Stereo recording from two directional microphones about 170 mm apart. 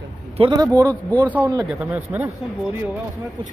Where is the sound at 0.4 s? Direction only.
25° right (ahead or behind).